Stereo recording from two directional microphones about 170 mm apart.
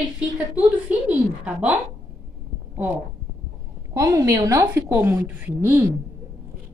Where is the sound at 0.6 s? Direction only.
5° right (ahead or behind).